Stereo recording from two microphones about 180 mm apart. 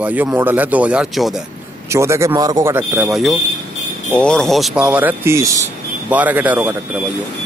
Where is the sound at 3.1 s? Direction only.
Centre (ahead or behind).